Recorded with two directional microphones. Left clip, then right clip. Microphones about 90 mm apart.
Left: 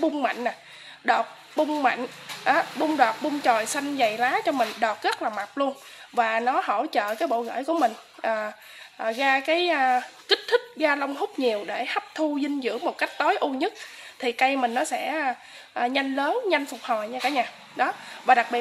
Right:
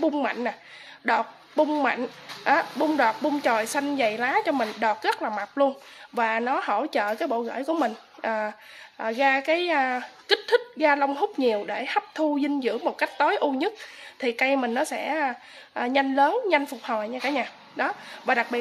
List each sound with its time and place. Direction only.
0.0 s speech: 30° right (ahead or behind)
2.4 s speech: 25° right (ahead or behind)